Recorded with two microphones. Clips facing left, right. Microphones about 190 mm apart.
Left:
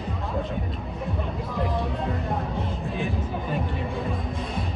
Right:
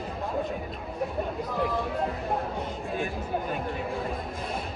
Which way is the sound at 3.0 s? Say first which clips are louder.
Left 1 dB; centre (ahead or behind).